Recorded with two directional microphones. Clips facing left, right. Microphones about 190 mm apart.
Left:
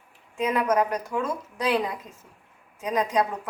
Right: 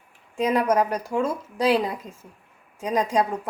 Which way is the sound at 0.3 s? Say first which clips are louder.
Right 2 dB; 35° right (ahead or behind).